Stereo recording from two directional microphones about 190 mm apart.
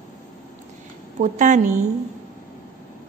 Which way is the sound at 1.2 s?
40° right (ahead or behind).